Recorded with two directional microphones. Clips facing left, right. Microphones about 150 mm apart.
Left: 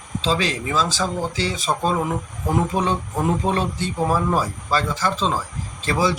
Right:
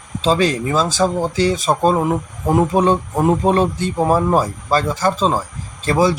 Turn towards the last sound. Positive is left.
turn(degrees=-45)  # may be behind; listen again after turning